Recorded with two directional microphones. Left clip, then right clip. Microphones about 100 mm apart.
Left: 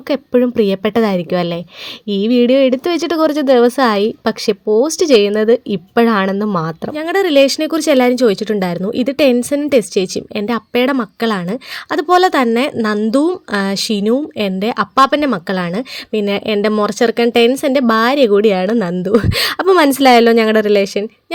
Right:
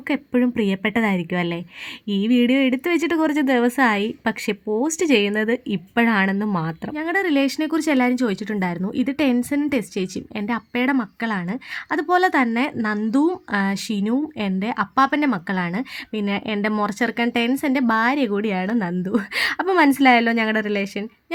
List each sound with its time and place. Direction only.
0.1 s speech: 30° left (ahead or behind)
6.3 s speech: 20° left (ahead or behind)
6.6 s speech: 35° left (ahead or behind)